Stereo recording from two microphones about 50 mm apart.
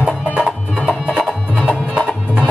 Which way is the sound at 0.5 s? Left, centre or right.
Left.